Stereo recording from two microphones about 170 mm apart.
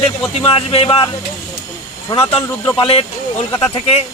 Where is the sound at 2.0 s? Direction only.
20° left (ahead or behind).